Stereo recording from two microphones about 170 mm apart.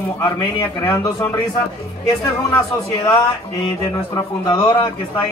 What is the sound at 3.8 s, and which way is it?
Speech, 20° left (ahead or behind).